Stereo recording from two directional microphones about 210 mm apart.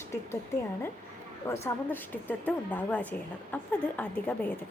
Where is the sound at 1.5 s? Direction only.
10° left (ahead or behind).